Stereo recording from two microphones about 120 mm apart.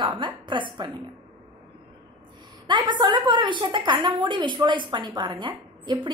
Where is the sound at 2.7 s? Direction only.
40° right (ahead or behind).